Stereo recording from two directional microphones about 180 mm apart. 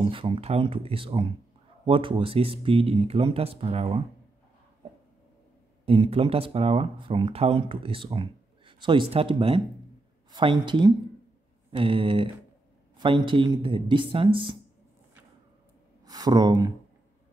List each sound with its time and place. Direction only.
0.1 s speech: 30° right (ahead or behind)
5.9 s speech: 30° right (ahead or behind)
16.1 s speech: 20° right (ahead or behind)